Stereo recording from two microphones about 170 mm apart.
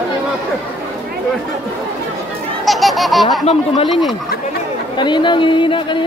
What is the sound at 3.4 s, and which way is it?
Speech, 35° left (ahead or behind).